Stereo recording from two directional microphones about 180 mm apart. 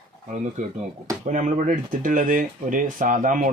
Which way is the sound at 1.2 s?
45° right (ahead or behind).